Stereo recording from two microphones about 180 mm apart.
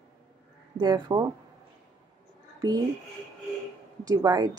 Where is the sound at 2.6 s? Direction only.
20° right (ahead or behind).